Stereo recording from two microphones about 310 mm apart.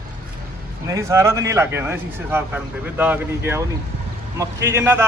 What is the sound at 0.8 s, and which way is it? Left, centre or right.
A man's voice, centre.